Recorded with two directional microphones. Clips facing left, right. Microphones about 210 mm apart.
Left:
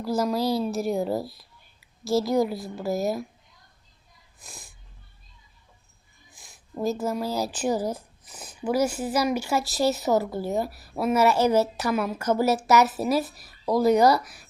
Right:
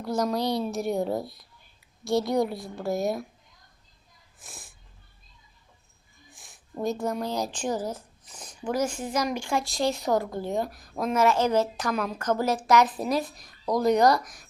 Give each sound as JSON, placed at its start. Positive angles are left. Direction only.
{"t": 0.0, "sound": "a woman's voice", "side_deg": 0}
{"t": 4.4, "sound": "speech", "side_deg": 0}
{"t": 6.3, "sound": "speech", "side_deg": 0}